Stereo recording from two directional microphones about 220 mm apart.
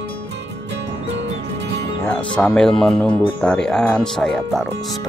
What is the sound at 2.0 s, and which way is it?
Music, 5° left (ahead or behind).